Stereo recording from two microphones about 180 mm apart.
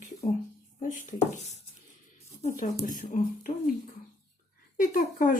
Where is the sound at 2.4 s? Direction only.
45° left (ahead or behind).